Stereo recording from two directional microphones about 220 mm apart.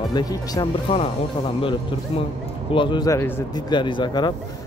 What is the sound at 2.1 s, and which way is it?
A man's voice, 25° left (ahead or behind).